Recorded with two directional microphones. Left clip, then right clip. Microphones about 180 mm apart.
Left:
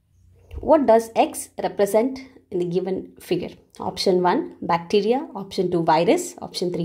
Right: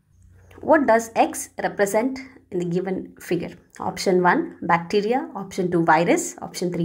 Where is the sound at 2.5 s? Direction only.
50° left (ahead or behind).